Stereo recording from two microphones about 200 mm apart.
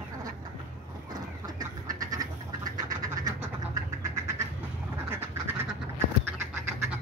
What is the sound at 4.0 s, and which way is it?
Cat, 15° right (ahead or behind).